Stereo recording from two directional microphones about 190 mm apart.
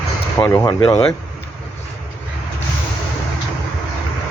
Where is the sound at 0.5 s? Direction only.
25° left (ahead or behind).